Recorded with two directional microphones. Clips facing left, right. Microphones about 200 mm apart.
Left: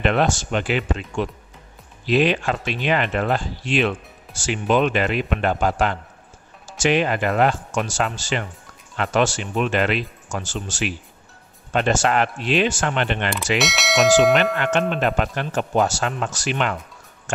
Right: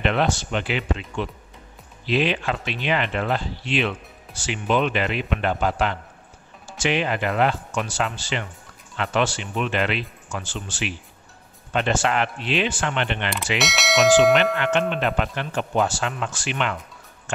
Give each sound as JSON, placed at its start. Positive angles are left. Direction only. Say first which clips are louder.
{"t": 0.0, "sound": "speech", "louder": "left 2 dB", "side_deg": 45}
{"t": 13.6, "sound": "speech", "louder": "even", "side_deg": 0}
{"t": 14.6, "sound": "speech", "louder": "left 1 dB", "side_deg": 45}